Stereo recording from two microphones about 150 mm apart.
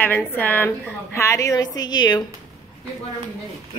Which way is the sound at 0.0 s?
15° left (ahead or behind).